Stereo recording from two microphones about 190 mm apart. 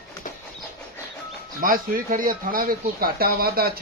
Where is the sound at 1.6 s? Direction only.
45° right (ahead or behind).